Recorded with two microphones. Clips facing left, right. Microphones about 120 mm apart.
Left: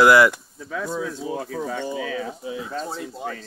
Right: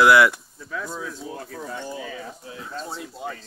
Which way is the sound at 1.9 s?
90° left.